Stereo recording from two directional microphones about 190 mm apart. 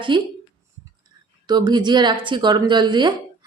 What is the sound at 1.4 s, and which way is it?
Speech, 20° right (ahead or behind).